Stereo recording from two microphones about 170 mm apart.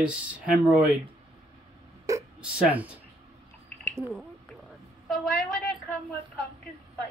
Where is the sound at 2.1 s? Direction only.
20° right (ahead or behind).